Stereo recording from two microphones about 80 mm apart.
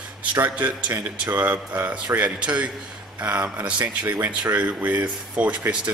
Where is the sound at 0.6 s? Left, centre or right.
Centre.